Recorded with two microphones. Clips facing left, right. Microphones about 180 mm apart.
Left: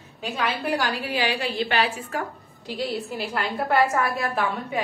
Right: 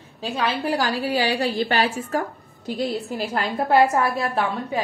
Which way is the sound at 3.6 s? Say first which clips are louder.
Right 4 dB; 30° right (ahead or behind).